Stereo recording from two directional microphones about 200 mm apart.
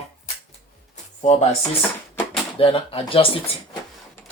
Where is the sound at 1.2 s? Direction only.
35° left (ahead or behind).